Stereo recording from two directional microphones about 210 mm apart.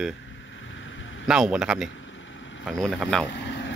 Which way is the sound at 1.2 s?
5° right (ahead or behind).